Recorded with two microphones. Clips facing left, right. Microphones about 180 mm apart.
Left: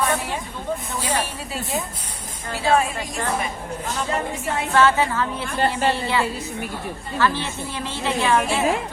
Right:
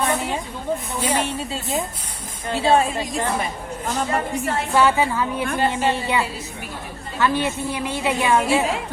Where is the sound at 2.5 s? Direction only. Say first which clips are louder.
Right 2 dB; 25° right (ahead or behind).